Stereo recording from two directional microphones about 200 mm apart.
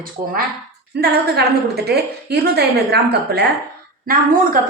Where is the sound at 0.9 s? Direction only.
55° right (ahead or behind).